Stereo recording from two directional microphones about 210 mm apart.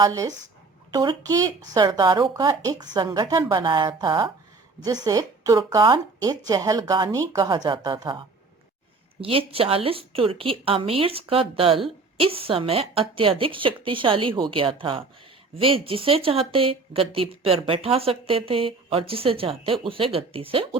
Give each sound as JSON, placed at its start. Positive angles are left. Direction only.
{"t": 0.0, "sound": "speech", "side_deg": -15}
{"t": 9.2, "sound": "speech", "side_deg": -25}